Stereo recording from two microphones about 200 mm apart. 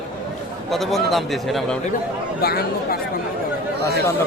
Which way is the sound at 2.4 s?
50° left (ahead or behind).